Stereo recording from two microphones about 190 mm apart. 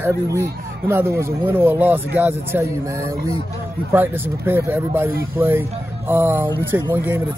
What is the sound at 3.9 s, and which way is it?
Speech, 10° right (ahead or behind).